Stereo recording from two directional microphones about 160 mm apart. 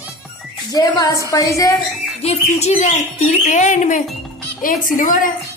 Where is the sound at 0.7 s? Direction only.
25° left (ahead or behind).